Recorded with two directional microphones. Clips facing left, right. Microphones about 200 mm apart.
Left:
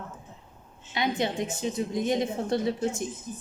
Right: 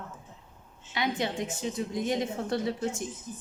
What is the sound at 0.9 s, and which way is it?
A woman's voice, 20° left (ahead or behind).